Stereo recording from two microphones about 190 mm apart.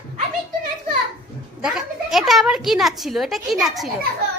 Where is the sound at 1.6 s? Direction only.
5° right (ahead or behind).